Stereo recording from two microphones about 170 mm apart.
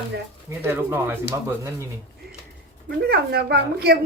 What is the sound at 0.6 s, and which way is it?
Speech, 10° right (ahead or behind).